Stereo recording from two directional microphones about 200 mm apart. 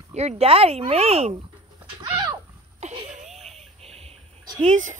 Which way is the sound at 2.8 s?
35° right (ahead or behind).